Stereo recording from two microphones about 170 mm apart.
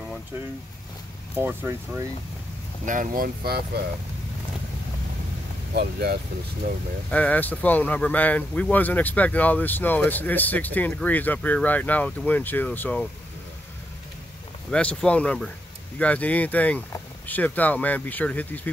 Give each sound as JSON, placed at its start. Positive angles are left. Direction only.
{"t": 1.3, "sound": "speech", "side_deg": -10}
{"t": 2.8, "sound": "speech", "side_deg": -50}
{"t": 5.8, "sound": "speech", "side_deg": -70}
{"t": 7.1, "sound": "speech", "side_deg": 10}
{"t": 14.7, "sound": "speech", "side_deg": 5}